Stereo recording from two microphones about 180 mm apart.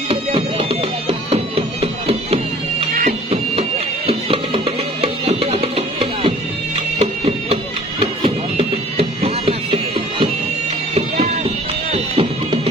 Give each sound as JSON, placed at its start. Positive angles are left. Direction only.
{"t": 0.1, "sound": "music", "side_deg": -35}
{"t": 11.9, "sound": "music", "side_deg": -35}